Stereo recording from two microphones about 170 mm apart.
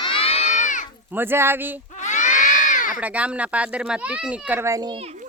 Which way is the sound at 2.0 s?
45° left (ahead or behind).